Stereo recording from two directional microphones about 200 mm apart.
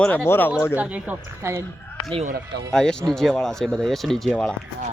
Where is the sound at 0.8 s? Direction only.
5° right (ahead or behind).